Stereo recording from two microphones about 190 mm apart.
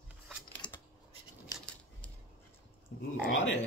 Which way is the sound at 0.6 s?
25° left (ahead or behind).